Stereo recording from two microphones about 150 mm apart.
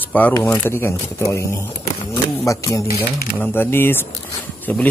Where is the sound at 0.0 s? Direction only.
10° left (ahead or behind).